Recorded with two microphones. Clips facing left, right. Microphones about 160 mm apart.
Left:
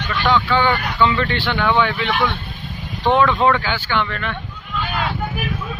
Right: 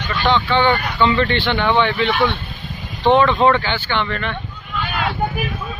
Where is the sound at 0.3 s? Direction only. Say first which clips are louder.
Right 1 dB; 5° left (ahead or behind).